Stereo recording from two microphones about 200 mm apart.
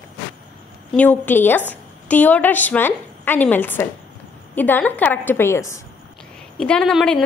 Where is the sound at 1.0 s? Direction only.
10° left (ahead or behind).